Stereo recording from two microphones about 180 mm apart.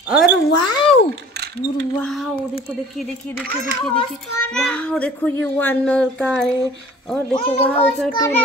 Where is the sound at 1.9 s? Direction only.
5° left (ahead or behind).